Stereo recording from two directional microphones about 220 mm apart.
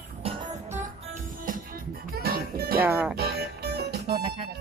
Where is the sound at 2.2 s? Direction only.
45° right (ahead or behind).